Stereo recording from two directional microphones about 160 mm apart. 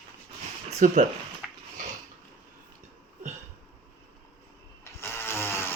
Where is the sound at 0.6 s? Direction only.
50° right (ahead or behind).